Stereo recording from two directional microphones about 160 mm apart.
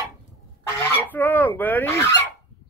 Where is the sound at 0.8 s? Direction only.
15° left (ahead or behind).